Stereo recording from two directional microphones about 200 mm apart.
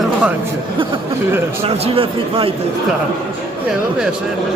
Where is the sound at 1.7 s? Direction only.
30° right (ahead or behind).